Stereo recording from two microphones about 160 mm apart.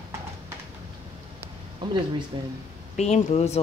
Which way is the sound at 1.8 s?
30° right (ahead or behind).